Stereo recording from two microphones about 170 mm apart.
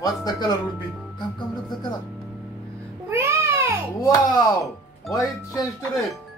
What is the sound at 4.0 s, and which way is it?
Speech, 20° left (ahead or behind).